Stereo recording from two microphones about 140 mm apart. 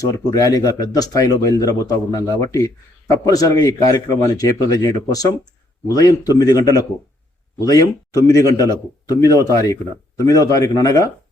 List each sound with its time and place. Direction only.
0.0 s speech: 25° left (ahead or behind)